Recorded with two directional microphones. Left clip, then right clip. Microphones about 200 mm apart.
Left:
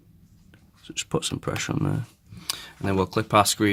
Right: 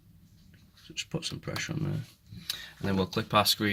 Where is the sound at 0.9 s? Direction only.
55° left (ahead or behind).